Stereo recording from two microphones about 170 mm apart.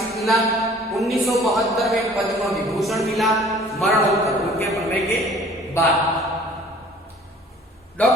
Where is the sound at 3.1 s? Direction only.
Centre (ahead or behind).